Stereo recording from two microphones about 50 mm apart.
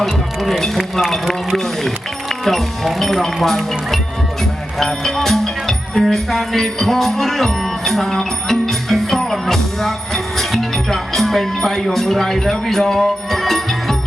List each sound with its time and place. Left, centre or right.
0.0 s speech: centre
4.8 s music: centre